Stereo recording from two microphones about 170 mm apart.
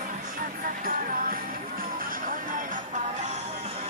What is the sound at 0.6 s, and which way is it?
Music, 55° right (ahead or behind).